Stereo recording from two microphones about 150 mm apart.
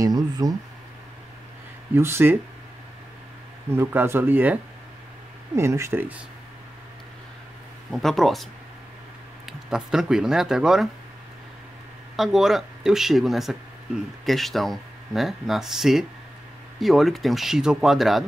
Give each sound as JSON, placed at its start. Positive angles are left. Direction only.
{"t": 0.0, "sound": "a sound", "side_deg": -25}
{"t": 2.0, "sound": "speech", "side_deg": -15}
{"t": 3.7, "sound": "speech", "side_deg": -15}
{"t": 5.6, "sound": "speech", "side_deg": -20}
{"t": 7.9, "sound": "speech", "side_deg": 0}
{"t": 9.5, "sound": "speech", "side_deg": -5}
{"t": 12.2, "sound": "speech", "side_deg": 0}